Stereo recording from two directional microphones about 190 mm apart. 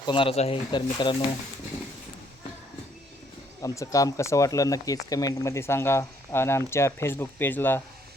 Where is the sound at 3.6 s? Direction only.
15° left (ahead or behind).